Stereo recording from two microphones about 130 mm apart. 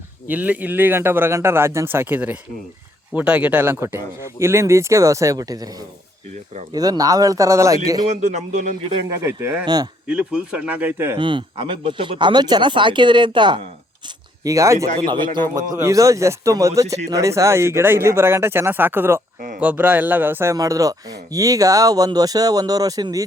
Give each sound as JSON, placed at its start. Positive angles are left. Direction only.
{"t": 0.3, "sound": "a man's voice", "side_deg": -10}
{"t": 6.7, "sound": "speech", "side_deg": -30}
{"t": 8.2, "sound": "speech", "side_deg": -65}
{"t": 9.0, "sound": "speech", "side_deg": -20}
{"t": 9.6, "sound": "speech", "side_deg": -35}
{"t": 10.1, "sound": "a man's voice", "side_deg": -5}
{"t": 11.2, "sound": "speech", "side_deg": -40}
{"t": 14.4, "sound": "a man's voice", "side_deg": -25}